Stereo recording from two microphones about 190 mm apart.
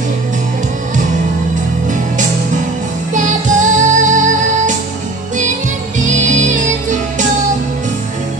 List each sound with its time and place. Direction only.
3.2 s music: 40° right (ahead or behind)
6.0 s music: 40° right (ahead or behind)